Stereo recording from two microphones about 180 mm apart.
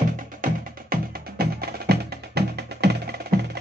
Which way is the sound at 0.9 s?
55° right (ahead or behind).